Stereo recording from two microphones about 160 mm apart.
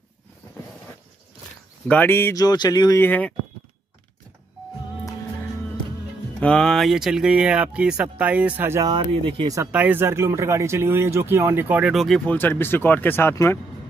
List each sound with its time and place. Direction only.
1.9 s speech: 10° left (ahead or behind)
3.1 s speech: 10° left (ahead or behind)
6.4 s speech: 5° left (ahead or behind); by 8.9 s 15° right (ahead or behind)
8.9 s speech: 30° right (ahead or behind)
9.7 s speech: 10° right (ahead or behind)
12.4 s speech: 15° left (ahead or behind)